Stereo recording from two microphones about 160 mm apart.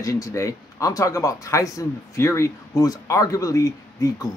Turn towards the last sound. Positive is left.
turn(degrees=20)  # may be behind; listen again after turning